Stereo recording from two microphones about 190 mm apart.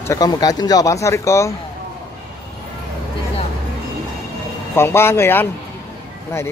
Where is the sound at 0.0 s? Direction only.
20° left (ahead or behind).